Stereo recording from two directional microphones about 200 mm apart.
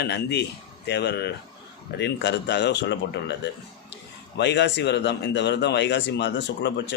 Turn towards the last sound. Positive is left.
turn(degrees=60)  # may be behind; listen again after turning